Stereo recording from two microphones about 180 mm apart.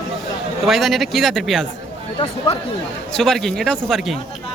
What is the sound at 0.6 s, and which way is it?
A man's voice, centre (ahead or behind).